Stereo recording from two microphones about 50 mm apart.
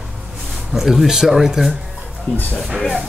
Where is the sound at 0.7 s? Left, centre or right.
Centre.